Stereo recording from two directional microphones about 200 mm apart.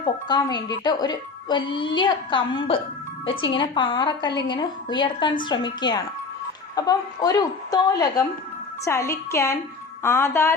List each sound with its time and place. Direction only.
0.3 s a woman's voice: 20° left (ahead or behind)